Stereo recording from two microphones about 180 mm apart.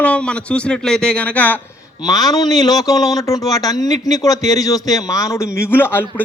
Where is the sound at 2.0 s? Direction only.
20° left (ahead or behind).